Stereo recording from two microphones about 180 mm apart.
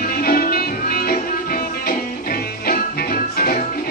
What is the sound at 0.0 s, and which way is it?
Music, 55° left (ahead or behind).